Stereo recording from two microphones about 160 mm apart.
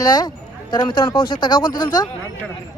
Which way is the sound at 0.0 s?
25° left (ahead or behind).